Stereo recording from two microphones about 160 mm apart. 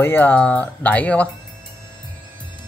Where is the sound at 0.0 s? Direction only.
15° left (ahead or behind).